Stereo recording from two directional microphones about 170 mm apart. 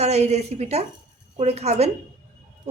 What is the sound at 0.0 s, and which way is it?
A woman's voice, 40° right (ahead or behind).